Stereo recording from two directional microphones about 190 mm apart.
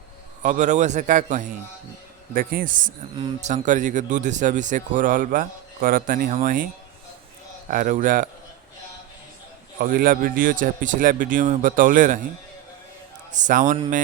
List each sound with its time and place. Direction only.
0.4 s a man's voice: 40° right (ahead or behind)
7.7 s a man's voice: 45° right (ahead or behind)
9.8 s a man's voice: 45° right (ahead or behind)
13.3 s speech: 40° right (ahead or behind)